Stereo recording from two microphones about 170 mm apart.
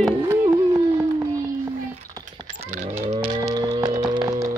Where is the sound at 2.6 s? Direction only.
45° right (ahead or behind).